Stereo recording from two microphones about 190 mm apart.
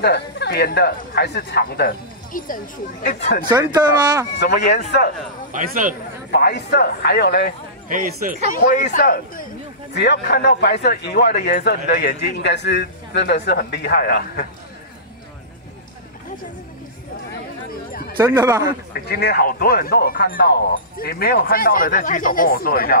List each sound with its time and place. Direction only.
0.0 s speech: 60° left (ahead or behind); by 3.4 s 45° left (ahead or behind)
3.4 s speech: 20° right (ahead or behind)
4.6 s speech: 40° left (ahead or behind)
5.5 s speech: 45° right (ahead or behind)
6.3 s speech: 60° left (ahead or behind)
7.9 s speech: 45° right (ahead or behind)
8.5 s speech: 45° left (ahead or behind)
9.9 s speech: 60° left (ahead or behind); by 14.5 s 45° left (ahead or behind)
18.2 s speech: 20° right (ahead or behind)
18.7 s speech: 55° left (ahead or behind)